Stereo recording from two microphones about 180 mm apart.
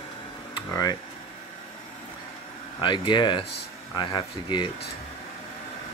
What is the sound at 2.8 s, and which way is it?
Speech, 25° left (ahead or behind).